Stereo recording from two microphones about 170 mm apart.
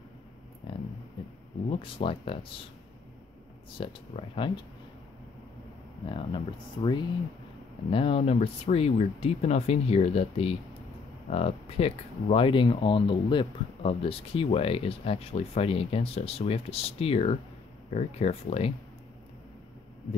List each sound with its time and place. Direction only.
1.7 s speech: 30° left (ahead or behind)
3.7 s speech: 30° left (ahead or behind)
6.0 s speech: 30° left (ahead or behind)